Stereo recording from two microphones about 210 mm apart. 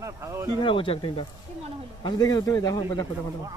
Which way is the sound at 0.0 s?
15° right (ahead or behind).